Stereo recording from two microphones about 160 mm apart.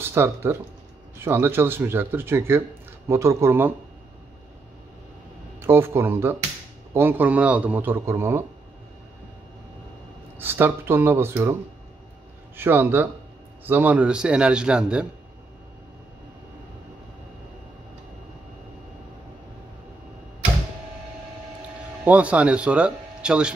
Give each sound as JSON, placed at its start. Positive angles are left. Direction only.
{"t": 0.0, "sound": "a man's voice", "side_deg": -15}
{"t": 5.6, "sound": "a man's voice", "side_deg": -15}
{"t": 10.4, "sound": "a man's voice", "side_deg": -15}
{"t": 12.5, "sound": "a man's voice", "side_deg": -10}
{"t": 22.0, "sound": "speech", "side_deg": -10}